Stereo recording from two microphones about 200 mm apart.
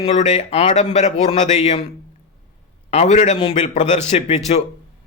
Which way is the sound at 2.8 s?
35° left (ahead or behind).